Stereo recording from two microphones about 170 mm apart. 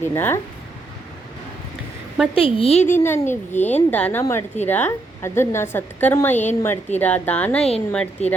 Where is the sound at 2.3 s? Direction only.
30° left (ahead or behind).